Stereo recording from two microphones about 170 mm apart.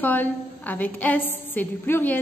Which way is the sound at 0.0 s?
10° left (ahead or behind).